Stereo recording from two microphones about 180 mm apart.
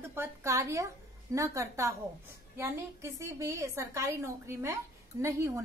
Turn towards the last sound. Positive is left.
turn(degrees=-15)  # may be behind; listen again after turning